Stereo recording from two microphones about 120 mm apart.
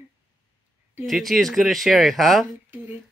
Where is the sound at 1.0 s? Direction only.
Centre (ahead or behind).